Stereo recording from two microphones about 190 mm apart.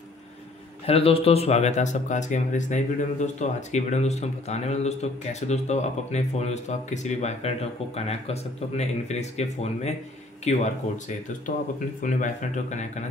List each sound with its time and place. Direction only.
0.8 s speech: 30° left (ahead or behind)
12.0 s speech: 45° left (ahead or behind)